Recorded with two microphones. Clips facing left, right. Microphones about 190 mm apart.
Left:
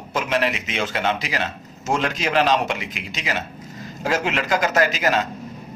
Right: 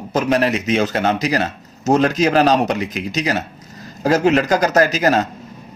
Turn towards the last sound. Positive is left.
turn(degrees=-40)  # may be behind; listen again after turning